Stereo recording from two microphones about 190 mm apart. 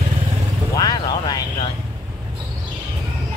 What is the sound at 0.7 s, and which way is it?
Speech, 20° left (ahead or behind).